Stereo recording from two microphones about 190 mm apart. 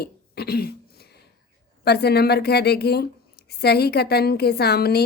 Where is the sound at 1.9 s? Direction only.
60° left (ahead or behind).